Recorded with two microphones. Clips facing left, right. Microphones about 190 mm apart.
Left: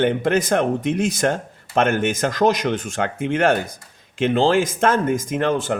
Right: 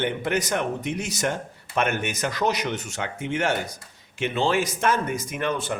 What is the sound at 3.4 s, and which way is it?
Speech, 55° left (ahead or behind).